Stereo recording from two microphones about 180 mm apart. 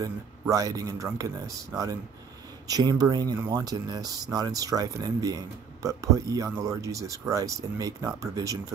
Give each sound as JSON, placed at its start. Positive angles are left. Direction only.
{"t": 0.0, "sound": "speech", "side_deg": -20}